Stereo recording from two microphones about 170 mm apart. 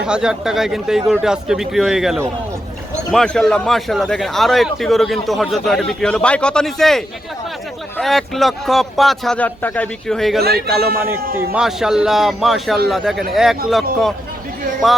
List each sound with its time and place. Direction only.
0.0 s a man's voice: 5° right (ahead or behind)
10.4 s a man's voice: 70° right (ahead or behind)
11.5 s a man's voice: 5° right (ahead or behind)